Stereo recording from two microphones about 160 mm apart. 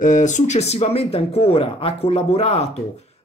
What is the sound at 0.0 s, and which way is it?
Speech, 50° left (ahead or behind).